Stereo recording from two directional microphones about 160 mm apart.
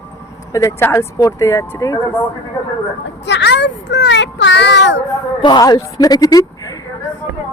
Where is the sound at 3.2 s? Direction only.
90° left.